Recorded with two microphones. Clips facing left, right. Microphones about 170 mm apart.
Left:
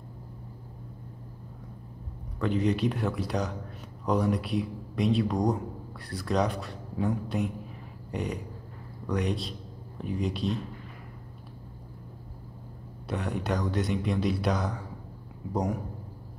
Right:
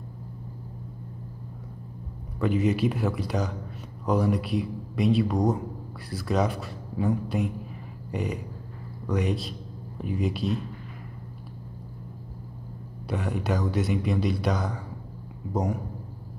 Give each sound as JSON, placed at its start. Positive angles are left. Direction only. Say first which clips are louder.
{"t": 2.4, "sound": "speech", "louder": "right 2 dB", "side_deg": -5}
{"t": 8.1, "sound": "a sound", "louder": "right 2 dB", "side_deg": 0}
{"t": 9.0, "sound": "speech", "louder": "right 2 dB", "side_deg": 0}
{"t": 13.0, "sound": "speech", "louder": "right 2 dB", "side_deg": 0}